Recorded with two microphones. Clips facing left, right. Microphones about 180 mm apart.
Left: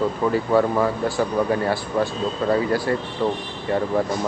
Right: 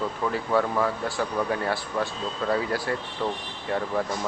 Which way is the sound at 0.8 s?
Centre (ahead or behind).